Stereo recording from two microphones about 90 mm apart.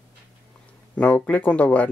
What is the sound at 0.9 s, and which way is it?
Speech, 15° left (ahead or behind).